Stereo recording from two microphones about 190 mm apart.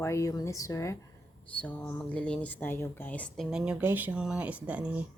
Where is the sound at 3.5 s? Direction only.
5° right (ahead or behind).